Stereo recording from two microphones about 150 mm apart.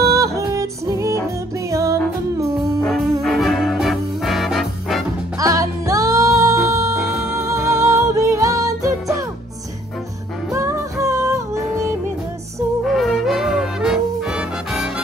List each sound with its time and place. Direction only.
0.0 s yodeling: 20° right (ahead or behind)
1.7 s music: 20° right (ahead or behind)
2.8 s music: centre (ahead or behind)
5.4 s music: 20° right (ahead or behind)
7.0 s music: 5° right (ahead or behind)
7.7 s music: 20° right (ahead or behind)
10.5 s music: 20° right (ahead or behind)
12.8 s music: centre (ahead or behind)